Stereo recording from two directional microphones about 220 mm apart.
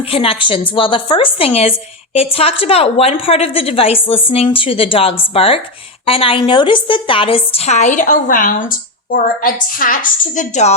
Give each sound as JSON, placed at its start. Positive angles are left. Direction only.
{"t": 0.1, "sound": "a woman's voice", "side_deg": 25}